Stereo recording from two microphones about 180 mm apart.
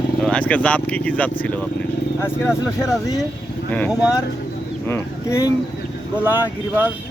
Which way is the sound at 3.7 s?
10° left (ahead or behind).